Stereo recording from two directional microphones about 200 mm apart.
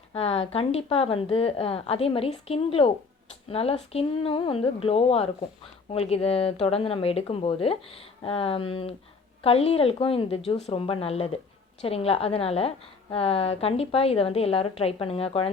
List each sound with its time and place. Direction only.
0.1 s a woman's voice: 30° left (ahead or behind)